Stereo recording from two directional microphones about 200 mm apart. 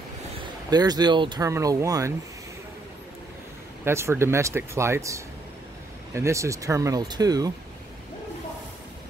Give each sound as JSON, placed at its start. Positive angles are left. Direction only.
{"t": 0.7, "sound": "speech", "side_deg": -20}
{"t": 3.8, "sound": "speech", "side_deg": -10}